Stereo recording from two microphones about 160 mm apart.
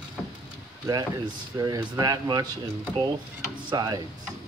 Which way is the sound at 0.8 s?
25° right (ahead or behind).